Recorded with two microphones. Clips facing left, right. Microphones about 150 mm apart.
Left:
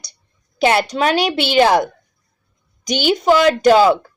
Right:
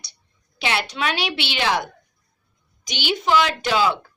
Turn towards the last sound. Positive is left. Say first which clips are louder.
# left 10 dB
turn(degrees=45)  # may be behind; listen again after turning